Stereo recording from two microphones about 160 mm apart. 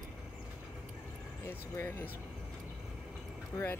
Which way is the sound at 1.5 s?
15° left (ahead or behind).